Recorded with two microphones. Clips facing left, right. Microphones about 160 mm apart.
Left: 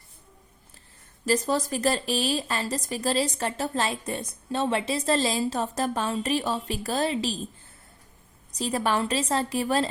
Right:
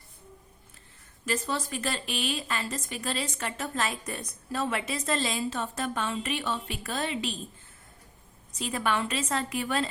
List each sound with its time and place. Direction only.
1.2 s a woman's voice: 40° left (ahead or behind)
8.5 s a woman's voice: 35° left (ahead or behind)